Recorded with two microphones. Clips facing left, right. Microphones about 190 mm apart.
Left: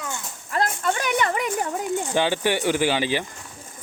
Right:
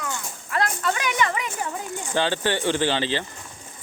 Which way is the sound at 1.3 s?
45° left (ahead or behind).